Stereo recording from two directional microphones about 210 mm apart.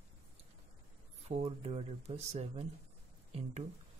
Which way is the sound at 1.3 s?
30° right (ahead or behind).